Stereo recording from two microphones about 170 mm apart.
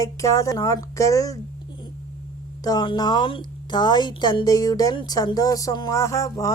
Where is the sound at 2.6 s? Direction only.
25° left (ahead or behind).